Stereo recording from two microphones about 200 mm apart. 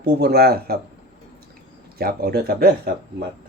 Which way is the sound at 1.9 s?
50° right (ahead or behind).